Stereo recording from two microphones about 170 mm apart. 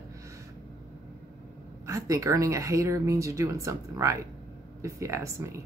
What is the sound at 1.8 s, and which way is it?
Speech, 20° right (ahead or behind).